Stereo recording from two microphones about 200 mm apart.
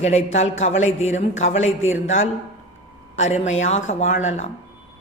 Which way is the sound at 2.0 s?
75° left (ahead or behind).